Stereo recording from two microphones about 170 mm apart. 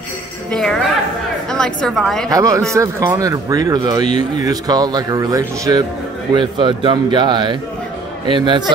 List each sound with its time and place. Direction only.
0.5 s a woman's voice: 5° left (ahead or behind)
2.2 s speech: 20° right (ahead or behind)